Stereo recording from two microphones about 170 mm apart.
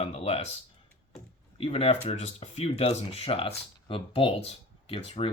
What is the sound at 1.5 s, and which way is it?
Speech, 35° left (ahead or behind).